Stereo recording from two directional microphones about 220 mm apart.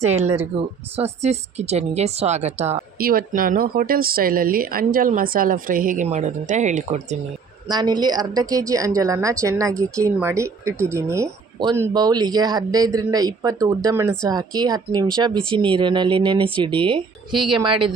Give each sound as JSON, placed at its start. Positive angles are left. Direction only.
{"t": 0.0, "sound": "speech", "side_deg": -30}
{"t": 3.0, "sound": "speech", "side_deg": -40}
{"t": 7.7, "sound": "a woman's voice", "side_deg": -20}
{"t": 17.3, "sound": "a woman's voice", "side_deg": 0}
{"t": 17.6, "sound": "speech", "side_deg": -25}